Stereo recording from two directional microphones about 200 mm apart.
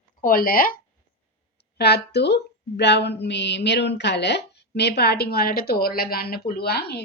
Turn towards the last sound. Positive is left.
turn(degrees=55)  # may be behind; listen again after turning